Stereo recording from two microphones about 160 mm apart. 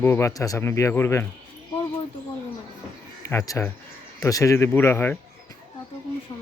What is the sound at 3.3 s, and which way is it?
Speech, 20° left (ahead or behind).